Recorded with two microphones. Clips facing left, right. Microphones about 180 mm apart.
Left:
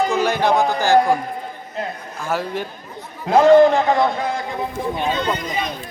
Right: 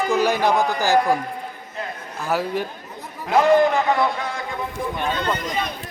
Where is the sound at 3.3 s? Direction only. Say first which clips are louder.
Left 5 dB; 30° left (ahead or behind).